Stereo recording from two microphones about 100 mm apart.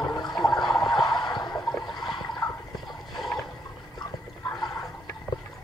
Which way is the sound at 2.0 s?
45° left (ahead or behind).